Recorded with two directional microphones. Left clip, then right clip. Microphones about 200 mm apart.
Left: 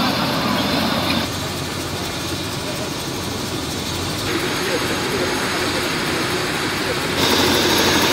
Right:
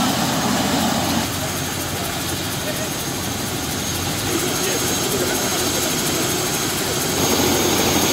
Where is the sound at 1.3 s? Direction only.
5° right (ahead or behind).